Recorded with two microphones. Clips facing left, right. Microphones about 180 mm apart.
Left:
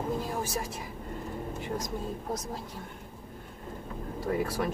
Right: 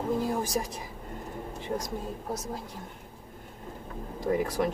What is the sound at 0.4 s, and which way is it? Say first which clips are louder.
Speech: right 3 dB; 15° right (ahead or behind).